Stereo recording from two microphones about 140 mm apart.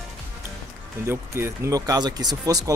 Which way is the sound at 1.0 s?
20° right (ahead or behind).